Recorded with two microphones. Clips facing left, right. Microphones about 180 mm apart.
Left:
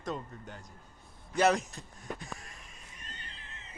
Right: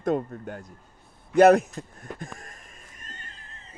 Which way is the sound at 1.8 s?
55° right (ahead or behind).